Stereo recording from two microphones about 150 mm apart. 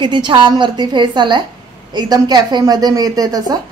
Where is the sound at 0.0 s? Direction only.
30° right (ahead or behind).